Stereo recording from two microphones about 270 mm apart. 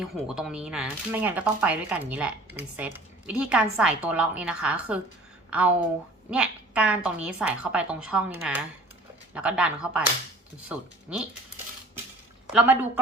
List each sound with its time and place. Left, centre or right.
0.0 s speech: centre